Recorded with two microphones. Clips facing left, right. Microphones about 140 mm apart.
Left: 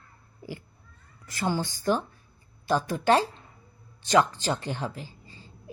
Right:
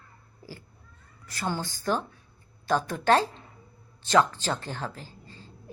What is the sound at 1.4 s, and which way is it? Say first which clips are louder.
A woman's voice: left 3 dB; 15° left (ahead or behind).